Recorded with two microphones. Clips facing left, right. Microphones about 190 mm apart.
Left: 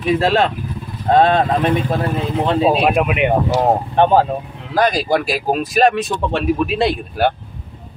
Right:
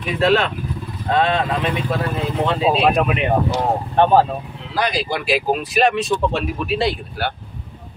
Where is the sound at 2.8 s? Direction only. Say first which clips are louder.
Left 2 dB; 15° left (ahead or behind).